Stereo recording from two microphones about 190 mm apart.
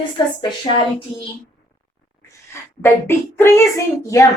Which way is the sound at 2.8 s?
15° left (ahead or behind).